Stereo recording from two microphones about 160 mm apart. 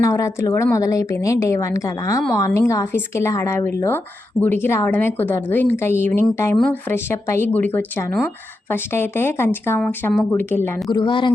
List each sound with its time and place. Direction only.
0.0 s a woman's voice: 20° left (ahead or behind)
10.9 s a woman's voice: 30° left (ahead or behind)